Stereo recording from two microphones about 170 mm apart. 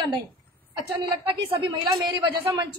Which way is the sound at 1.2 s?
25° right (ahead or behind).